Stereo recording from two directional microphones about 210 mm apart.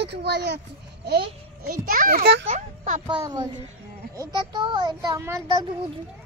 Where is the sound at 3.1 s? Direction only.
20° right (ahead or behind).